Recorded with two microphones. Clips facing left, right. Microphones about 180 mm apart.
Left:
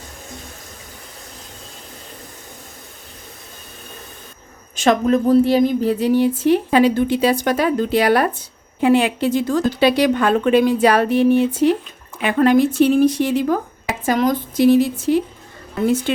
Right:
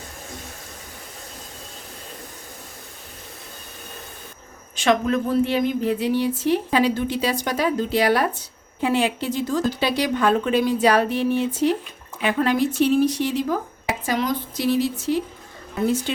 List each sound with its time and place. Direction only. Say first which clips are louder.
4.8 s a woman's voice: left 4 dB; 40° left (ahead or behind); by 15.2 s 55° left (ahead or behind)